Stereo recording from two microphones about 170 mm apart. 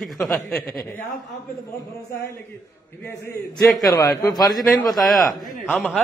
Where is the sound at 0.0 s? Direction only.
Centre (ahead or behind).